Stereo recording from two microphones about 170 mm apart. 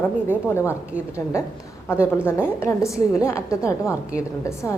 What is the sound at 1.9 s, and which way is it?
A woman's voice, 15° left (ahead or behind).